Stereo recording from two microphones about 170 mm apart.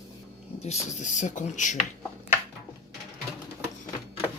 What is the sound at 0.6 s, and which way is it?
Speech, 40° left (ahead or behind).